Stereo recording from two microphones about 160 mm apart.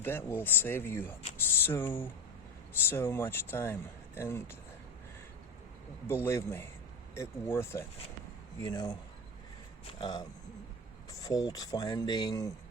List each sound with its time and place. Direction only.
0.0 s speech: 15° left (ahead or behind)
6.1 s speech: 15° left (ahead or behind)
10.0 s speech: 25° left (ahead or behind)